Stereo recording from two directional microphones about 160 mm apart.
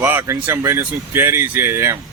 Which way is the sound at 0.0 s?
15° right (ahead or behind).